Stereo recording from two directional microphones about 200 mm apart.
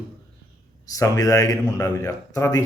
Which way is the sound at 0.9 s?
15° left (ahead or behind).